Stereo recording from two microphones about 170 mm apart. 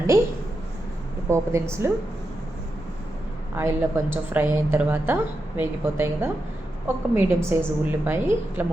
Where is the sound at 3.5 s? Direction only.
15° right (ahead or behind).